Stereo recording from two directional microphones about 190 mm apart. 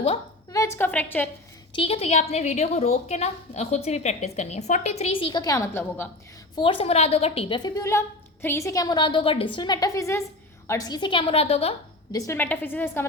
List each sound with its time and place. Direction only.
0.5 s a woman's voice: 15° left (ahead or behind)
1.7 s a woman's voice: 30° left (ahead or behind); by 6.1 s 15° left (ahead or behind)
6.6 s a woman's voice: 25° left (ahead or behind)
12.1 s a woman's voice: 15° left (ahead or behind)